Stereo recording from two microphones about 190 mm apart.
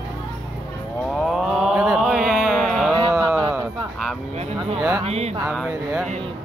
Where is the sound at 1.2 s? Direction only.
Centre (ahead or behind).